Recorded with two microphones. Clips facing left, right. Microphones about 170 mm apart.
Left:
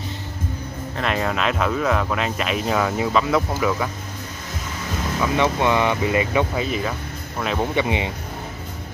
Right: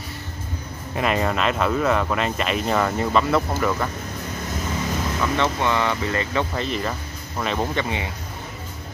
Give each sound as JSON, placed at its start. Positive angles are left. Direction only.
{"t": 0.9, "sound": "speech", "side_deg": -5}
{"t": 5.2, "sound": "speech", "side_deg": 15}
{"t": 7.7, "sound": "speech", "side_deg": 20}